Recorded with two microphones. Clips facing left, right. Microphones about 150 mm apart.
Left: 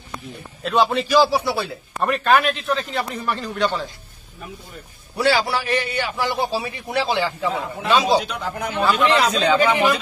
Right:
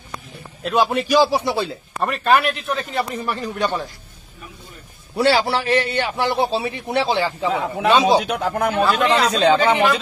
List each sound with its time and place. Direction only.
0.6 s a man's voice: 5° right (ahead or behind)
2.0 s a man's voice: centre (ahead or behind)
5.1 s a man's voice: 30° right (ahead or behind)
7.4 s a man's voice: 85° right
8.3 s speech: 60° right (ahead or behind)
8.9 s speech: 35° right (ahead or behind)